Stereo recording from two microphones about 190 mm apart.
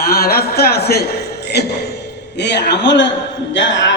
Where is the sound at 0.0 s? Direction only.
55° left (ahead or behind).